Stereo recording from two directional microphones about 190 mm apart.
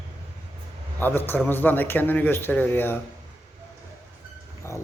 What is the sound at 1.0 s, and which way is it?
Speech, 10° left (ahead or behind).